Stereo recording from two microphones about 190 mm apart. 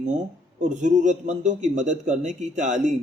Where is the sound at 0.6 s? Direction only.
40° right (ahead or behind).